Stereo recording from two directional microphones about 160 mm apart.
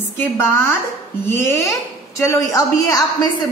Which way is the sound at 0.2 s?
15° left (ahead or behind).